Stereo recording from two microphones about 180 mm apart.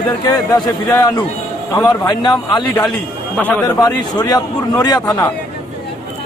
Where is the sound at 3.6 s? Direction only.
25° left (ahead or behind).